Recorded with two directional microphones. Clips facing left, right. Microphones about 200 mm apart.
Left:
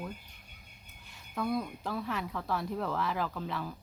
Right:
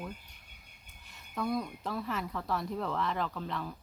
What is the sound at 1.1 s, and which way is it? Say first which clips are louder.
A woman's voice: left 1 dB; centre (ahead or behind).